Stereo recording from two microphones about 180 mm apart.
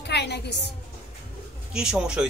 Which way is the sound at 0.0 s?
70° left (ahead or behind).